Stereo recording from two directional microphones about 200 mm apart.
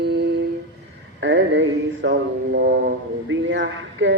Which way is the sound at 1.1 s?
65° right (ahead or behind).